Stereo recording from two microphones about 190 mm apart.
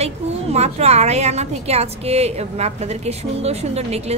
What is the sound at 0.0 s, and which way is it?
A woman's voice, 35° right (ahead or behind).